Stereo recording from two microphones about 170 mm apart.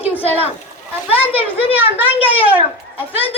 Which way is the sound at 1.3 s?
35° left (ahead or behind).